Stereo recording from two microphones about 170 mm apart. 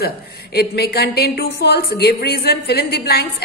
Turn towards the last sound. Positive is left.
turn(degrees=65)  # may be behind; listen again after turning